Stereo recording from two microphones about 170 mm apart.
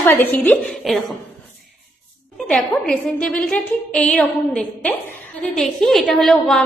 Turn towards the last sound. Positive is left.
turn(degrees=5)  # may be behind; listen again after turning